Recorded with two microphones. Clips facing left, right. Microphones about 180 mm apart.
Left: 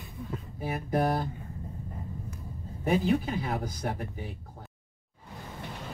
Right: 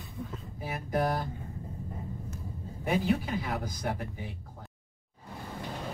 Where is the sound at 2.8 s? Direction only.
30° left (ahead or behind).